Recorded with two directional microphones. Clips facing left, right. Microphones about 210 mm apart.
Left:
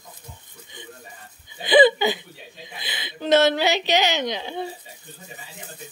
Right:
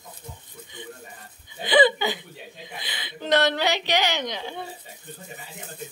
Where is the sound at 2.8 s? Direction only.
15° left (ahead or behind).